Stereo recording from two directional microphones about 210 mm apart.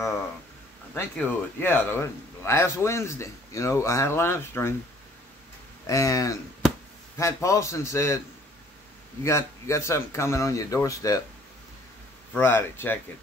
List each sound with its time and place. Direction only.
0.9 s a man's voice: 10° left (ahead or behind)
5.9 s a man's voice: 15° left (ahead or behind)
9.2 s a man's voice: 15° left (ahead or behind)
12.4 s a man's voice: 10° left (ahead or behind)